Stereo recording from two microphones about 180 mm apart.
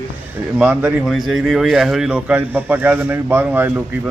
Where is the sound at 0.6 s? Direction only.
10° right (ahead or behind).